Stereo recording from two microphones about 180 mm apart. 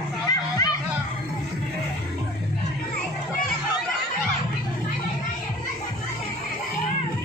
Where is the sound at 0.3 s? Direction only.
20° left (ahead or behind).